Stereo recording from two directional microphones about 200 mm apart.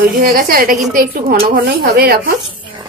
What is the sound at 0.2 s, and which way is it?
A woman's voice, 45° right (ahead or behind).